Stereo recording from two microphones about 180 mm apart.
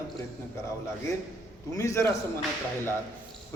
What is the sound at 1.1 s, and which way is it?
A man's voice, 15° left (ahead or behind).